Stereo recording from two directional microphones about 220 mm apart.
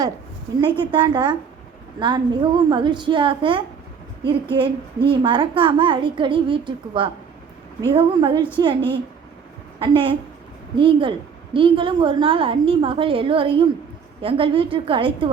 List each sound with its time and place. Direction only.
0.6 s a woman's voice: 20° right (ahead or behind)